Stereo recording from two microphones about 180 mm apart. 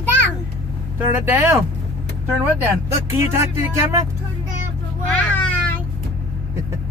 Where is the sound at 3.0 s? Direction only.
15° right (ahead or behind).